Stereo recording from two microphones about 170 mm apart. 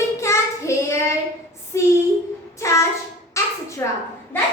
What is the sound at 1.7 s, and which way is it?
Speech, 15° left (ahead or behind).